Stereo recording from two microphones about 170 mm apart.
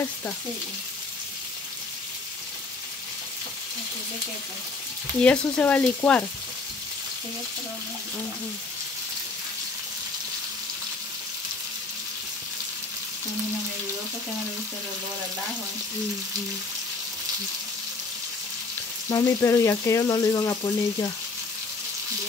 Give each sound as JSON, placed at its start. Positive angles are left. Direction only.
{"t": 5.2, "sound": "frying", "side_deg": 5}
{"t": 19.0, "sound": "speech", "side_deg": 20}